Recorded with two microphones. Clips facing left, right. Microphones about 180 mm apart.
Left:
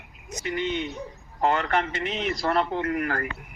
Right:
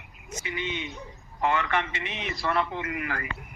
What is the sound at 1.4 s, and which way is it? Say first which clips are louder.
A man's voice: left 3 dB; 40° left (ahead or behind).